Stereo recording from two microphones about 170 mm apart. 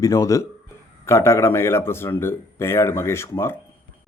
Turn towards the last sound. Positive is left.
turn(degrees=15)  # may be behind; listen again after turning